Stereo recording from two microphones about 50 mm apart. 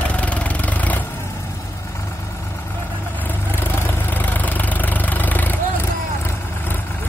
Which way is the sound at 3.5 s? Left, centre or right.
Left.